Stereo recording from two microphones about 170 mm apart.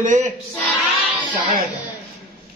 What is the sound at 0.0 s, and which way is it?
Speech, 45° right (ahead or behind).